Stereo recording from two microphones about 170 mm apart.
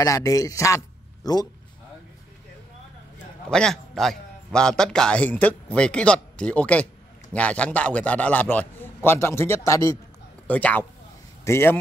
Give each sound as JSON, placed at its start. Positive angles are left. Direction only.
{"t": 0.0, "sound": "a man's voice", "side_deg": 20}
{"t": 3.4, "sound": "a man's voice", "side_deg": 5}